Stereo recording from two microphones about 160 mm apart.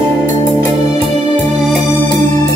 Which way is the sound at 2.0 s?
45° right (ahead or behind).